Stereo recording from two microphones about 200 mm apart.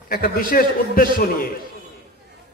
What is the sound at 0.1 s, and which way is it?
A man's voice, 45° left (ahead or behind).